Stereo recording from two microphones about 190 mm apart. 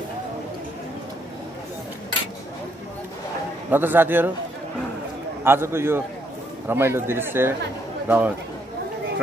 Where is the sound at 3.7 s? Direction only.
10° right (ahead or behind).